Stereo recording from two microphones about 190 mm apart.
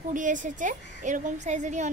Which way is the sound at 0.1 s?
45° right (ahead or behind).